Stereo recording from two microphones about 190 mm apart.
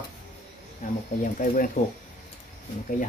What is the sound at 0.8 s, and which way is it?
Speech, 45° left (ahead or behind).